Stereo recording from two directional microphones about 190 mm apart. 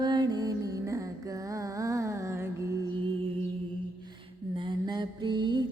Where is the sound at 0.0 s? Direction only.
20° right (ahead or behind).